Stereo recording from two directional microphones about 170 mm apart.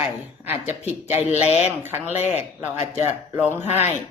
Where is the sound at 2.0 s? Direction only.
40° left (ahead or behind).